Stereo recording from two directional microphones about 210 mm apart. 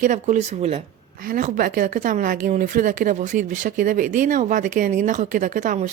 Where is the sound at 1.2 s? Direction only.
40° right (ahead or behind).